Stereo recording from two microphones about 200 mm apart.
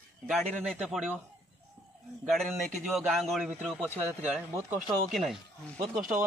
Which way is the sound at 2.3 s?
Centre (ahead or behind).